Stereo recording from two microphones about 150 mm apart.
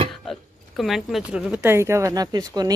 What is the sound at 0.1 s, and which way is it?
A woman's voice, centre (ahead or behind).